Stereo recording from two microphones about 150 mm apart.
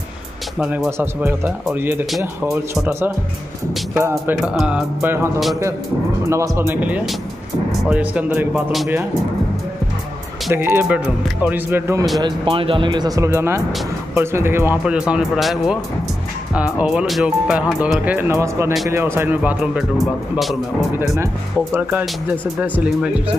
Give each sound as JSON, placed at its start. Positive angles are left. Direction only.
{"t": 0.6, "sound": "speech", "side_deg": -5}
{"t": 4.4, "sound": "speech", "side_deg": -5}
{"t": 10.5, "sound": "speech", "side_deg": -15}
{"t": 12.2, "sound": "speech", "side_deg": -30}